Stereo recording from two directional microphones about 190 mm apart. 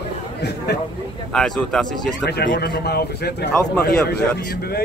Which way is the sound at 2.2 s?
60° left (ahead or behind).